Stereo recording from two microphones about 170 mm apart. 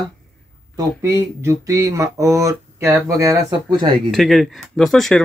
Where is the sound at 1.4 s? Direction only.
20° right (ahead or behind).